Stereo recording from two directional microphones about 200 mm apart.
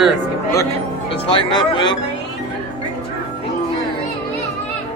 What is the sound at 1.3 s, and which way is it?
Speech, 25° left (ahead or behind).